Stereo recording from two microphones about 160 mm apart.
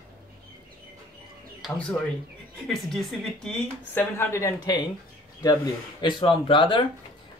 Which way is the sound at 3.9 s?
15° left (ahead or behind).